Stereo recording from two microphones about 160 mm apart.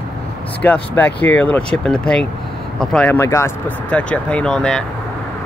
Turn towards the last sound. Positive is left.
turn(degrees=5)  # may be behind; listen again after turning